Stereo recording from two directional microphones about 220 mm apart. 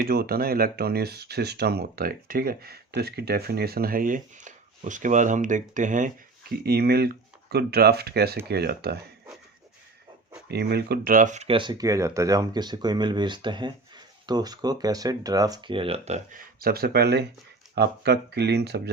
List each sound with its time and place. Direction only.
0.0 s speech: 45° right (ahead or behind)
6.6 s speech: 45° right (ahead or behind)
10.5 s speech: 45° right (ahead or behind)